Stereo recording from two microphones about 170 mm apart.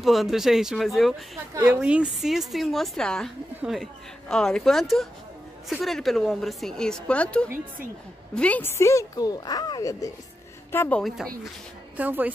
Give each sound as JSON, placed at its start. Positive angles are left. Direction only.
{"t": 0.0, "sound": "a woman's voice", "side_deg": 0}
{"t": 1.5, "sound": "a woman's voice", "side_deg": -10}
{"t": 12.0, "sound": "speech", "side_deg": -10}